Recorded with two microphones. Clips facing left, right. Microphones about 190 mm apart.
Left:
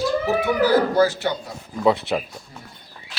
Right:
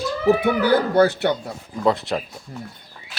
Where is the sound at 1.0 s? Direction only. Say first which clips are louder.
Right 2 dB; 60° right (ahead or behind).